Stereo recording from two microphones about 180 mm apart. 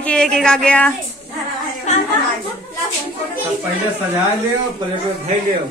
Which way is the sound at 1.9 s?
40° left (ahead or behind).